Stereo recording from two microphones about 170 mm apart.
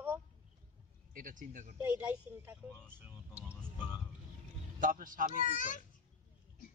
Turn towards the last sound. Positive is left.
turn(degrees=50)  # may be behind; listen again after turning